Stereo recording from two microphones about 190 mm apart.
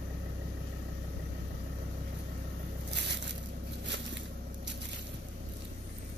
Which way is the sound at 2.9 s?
65° right (ahead or behind).